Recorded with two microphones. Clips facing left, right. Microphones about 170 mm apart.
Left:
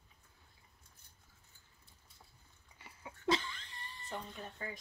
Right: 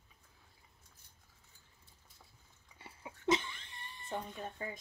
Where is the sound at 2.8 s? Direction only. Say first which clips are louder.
Right 2 dB; 25° right (ahead or behind).